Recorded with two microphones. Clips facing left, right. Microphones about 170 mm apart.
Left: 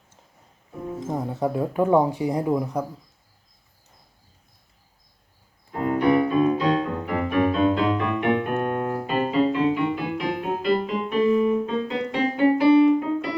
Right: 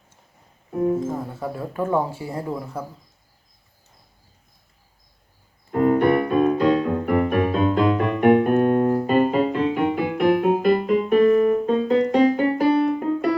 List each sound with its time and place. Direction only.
0.9 s speech: 20° left (ahead or behind)
6.0 s keyboard: 55° right (ahead or behind); by 9.1 s 35° right (ahead or behind)
9.1 s music: 50° right (ahead or behind)
12.5 s keyboard: 45° right (ahead or behind)